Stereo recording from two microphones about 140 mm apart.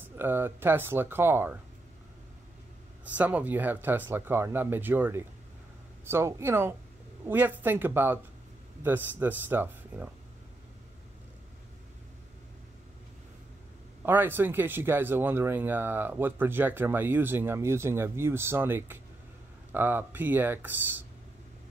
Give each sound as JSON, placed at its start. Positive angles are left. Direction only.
{"t": 0.0, "sound": "speech", "side_deg": -15}
{"t": 3.2, "sound": "speech", "side_deg": -10}
{"t": 14.0, "sound": "speech", "side_deg": -15}